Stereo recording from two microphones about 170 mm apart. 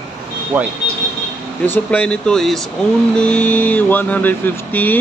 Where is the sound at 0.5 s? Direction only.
10° right (ahead or behind).